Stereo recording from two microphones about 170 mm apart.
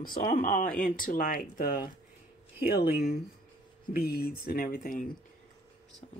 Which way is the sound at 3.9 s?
65° left (ahead or behind).